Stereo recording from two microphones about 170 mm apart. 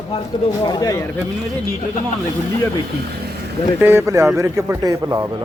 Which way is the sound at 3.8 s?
15° right (ahead or behind).